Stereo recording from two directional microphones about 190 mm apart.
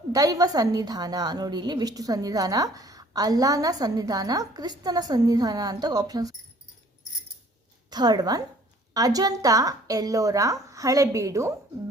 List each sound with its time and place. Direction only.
0.1 s a woman's voice: 20° right (ahead or behind)
7.9 s a woman's voice: 20° right (ahead or behind)